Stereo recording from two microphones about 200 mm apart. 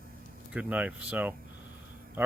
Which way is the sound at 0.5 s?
5° right (ahead or behind).